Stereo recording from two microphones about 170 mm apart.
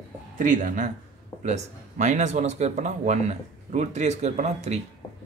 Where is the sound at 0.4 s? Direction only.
50° right (ahead or behind).